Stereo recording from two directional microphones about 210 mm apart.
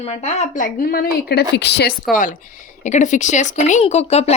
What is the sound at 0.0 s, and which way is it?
A woman's voice, 30° left (ahead or behind).